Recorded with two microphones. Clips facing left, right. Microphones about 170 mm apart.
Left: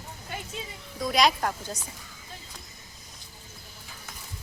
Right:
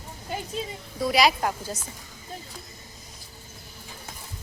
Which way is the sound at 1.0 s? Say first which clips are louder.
Right 2 dB; 5° right (ahead or behind).